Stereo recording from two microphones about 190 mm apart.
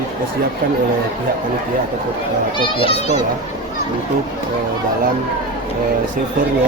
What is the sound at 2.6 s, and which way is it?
Speech, 25° left (ahead or behind).